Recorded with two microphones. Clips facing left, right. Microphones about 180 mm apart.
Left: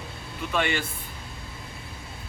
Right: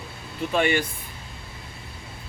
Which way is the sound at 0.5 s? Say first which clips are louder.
Right 4 dB; 25° right (ahead or behind).